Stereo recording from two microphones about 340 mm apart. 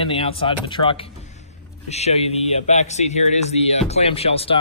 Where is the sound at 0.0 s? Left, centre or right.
Centre.